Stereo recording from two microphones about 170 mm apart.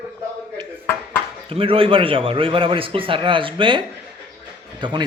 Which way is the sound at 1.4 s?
35° right (ahead or behind).